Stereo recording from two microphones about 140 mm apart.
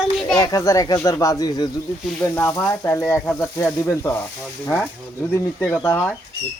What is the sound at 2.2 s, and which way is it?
Speech, 15° left (ahead or behind).